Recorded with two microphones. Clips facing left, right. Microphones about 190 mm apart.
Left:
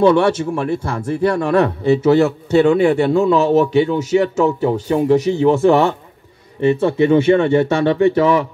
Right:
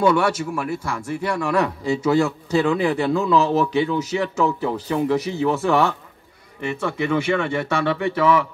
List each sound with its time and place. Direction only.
0.0 s speech: 25° left (ahead or behind)
6.6 s speech: 30° left (ahead or behind)